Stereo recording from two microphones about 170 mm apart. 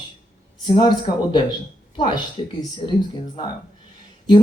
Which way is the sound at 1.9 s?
25° left (ahead or behind).